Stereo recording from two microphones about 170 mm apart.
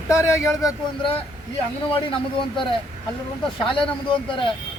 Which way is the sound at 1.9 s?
30° left (ahead or behind).